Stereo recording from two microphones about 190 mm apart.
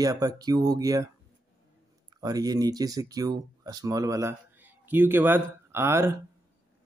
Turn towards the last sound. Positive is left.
turn(degrees=-15)  # may be behind; listen again after turning